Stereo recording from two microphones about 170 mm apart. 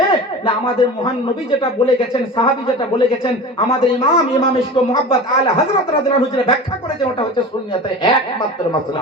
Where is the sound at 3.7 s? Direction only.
35° left (ahead or behind).